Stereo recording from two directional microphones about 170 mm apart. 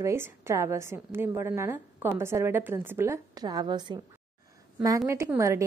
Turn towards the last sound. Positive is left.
turn(degrees=-20)  # may be behind; listen again after turning